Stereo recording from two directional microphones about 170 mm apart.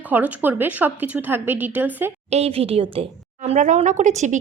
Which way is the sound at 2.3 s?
35° right (ahead or behind).